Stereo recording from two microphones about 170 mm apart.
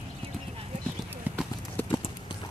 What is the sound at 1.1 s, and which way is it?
Clip-clop, 10° right (ahead or behind).